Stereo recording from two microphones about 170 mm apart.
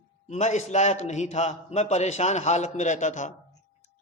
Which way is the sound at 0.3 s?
40° left (ahead or behind).